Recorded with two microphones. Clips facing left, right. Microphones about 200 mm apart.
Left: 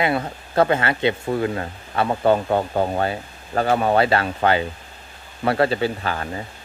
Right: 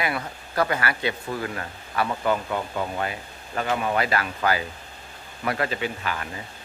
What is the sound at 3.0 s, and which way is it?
Speech, 35° left (ahead or behind).